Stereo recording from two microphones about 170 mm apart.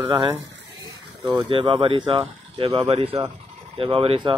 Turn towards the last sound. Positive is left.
turn(degrees=-30)  # may be behind; listen again after turning